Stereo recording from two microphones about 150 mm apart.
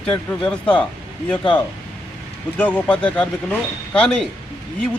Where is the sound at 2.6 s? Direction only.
10° left (ahead or behind).